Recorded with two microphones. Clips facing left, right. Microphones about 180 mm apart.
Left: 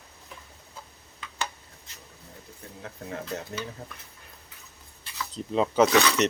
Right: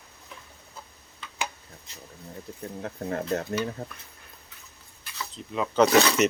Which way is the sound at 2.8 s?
50° right (ahead or behind).